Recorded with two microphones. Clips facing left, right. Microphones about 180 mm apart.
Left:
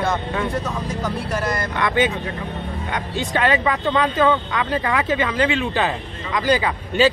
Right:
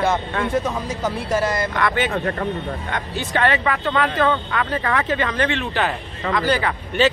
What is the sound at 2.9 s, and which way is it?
Speech, 15° left (ahead or behind).